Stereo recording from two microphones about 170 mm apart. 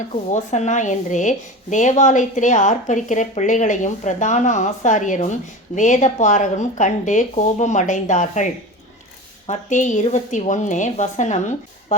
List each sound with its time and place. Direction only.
0.1 s a woman's voice: 45° left (ahead or behind)
9.5 s a woman's voice: 45° left (ahead or behind)